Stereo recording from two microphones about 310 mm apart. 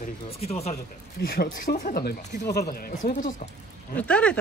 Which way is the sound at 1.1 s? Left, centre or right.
Left.